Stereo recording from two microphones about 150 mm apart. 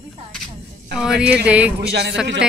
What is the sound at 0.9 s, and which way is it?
A woman's voice, 5° right (ahead or behind).